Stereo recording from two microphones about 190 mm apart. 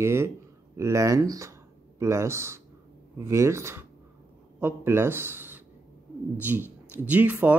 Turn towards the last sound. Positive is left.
turn(degrees=-10)  # may be behind; listen again after turning